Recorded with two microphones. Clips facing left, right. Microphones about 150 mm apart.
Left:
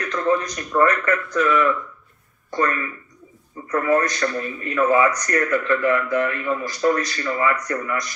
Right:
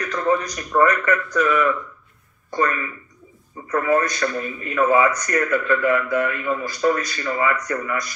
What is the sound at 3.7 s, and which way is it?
A man's voice, 40° left (ahead or behind).